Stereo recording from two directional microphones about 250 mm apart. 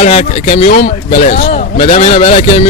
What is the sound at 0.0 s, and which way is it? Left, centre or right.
Speech, left.